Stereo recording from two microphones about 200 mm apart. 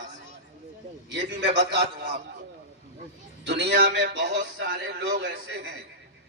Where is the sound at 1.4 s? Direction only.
55° right (ahead or behind).